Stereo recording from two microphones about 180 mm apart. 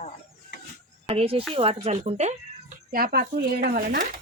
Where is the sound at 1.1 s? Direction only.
35° right (ahead or behind).